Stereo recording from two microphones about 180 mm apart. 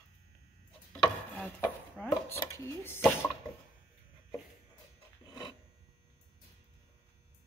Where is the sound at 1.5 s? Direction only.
10° left (ahead or behind).